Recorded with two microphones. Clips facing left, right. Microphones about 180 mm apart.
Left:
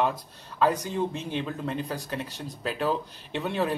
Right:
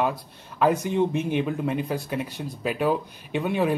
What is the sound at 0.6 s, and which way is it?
Speech, 15° right (ahead or behind).